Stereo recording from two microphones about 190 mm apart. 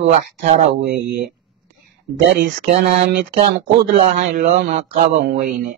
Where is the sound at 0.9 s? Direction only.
60° right (ahead or behind).